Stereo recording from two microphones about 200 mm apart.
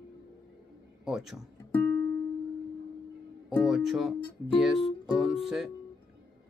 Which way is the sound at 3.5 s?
Centre (ahead or behind).